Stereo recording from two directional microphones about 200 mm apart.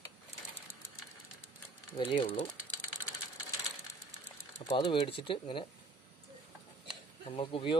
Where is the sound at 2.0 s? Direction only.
25° left (ahead or behind).